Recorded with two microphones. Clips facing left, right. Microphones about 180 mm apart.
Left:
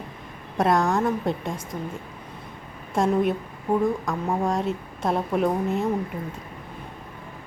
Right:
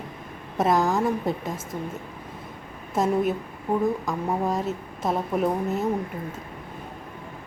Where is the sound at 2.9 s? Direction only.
5° right (ahead or behind).